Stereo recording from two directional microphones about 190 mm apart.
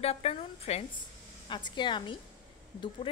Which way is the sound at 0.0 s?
35° left (ahead or behind).